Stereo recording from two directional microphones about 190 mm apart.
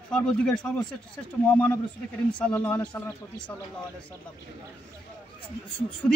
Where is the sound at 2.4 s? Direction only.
10° left (ahead or behind).